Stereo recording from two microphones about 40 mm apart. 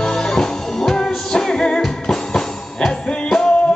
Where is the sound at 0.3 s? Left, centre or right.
Centre.